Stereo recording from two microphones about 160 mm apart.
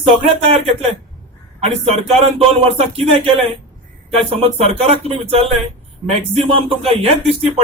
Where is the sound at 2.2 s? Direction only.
35° right (ahead or behind).